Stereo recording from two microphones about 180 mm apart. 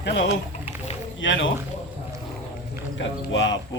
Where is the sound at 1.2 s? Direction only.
90° left.